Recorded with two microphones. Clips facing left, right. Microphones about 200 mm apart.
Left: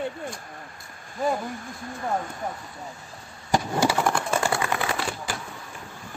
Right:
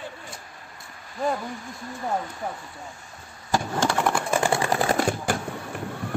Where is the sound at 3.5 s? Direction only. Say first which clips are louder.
Left 1 dB; 10° left (ahead or behind).